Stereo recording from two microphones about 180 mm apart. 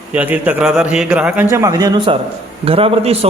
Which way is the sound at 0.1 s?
10° right (ahead or behind).